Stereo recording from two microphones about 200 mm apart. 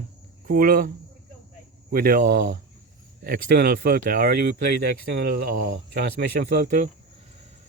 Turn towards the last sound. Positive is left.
turn(degrees=-55)  # may be behind; listen again after turning